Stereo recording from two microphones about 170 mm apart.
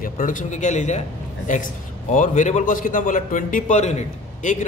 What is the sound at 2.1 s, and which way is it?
A man's voice, 50° left (ahead or behind).